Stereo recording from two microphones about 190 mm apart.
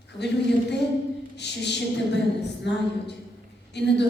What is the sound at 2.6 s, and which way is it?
A woman's voice, 65° left (ahead or behind).